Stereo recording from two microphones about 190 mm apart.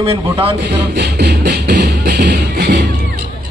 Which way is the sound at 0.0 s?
30° right (ahead or behind).